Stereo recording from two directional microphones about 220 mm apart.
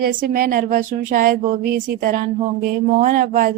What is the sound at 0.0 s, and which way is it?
Speech, 40° right (ahead or behind).